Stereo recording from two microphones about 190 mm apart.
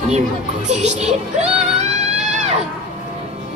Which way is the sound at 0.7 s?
35° right (ahead or behind).